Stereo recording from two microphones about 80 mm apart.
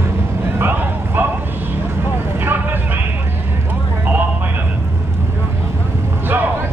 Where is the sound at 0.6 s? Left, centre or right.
Right.